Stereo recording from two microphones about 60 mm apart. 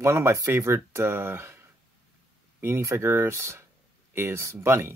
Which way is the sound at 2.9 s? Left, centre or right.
Right.